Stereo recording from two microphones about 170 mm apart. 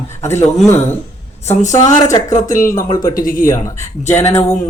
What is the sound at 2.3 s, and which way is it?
Mantra, 50° left (ahead or behind).